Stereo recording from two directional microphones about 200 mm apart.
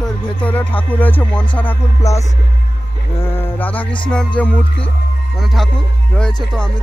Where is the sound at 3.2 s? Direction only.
10° left (ahead or behind).